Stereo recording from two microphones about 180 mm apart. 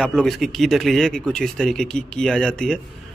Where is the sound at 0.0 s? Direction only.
5° left (ahead or behind).